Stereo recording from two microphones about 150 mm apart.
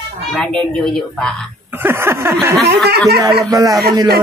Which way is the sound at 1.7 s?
15° right (ahead or behind).